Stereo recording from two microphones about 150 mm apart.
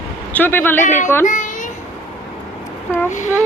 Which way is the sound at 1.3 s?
55° left (ahead or behind).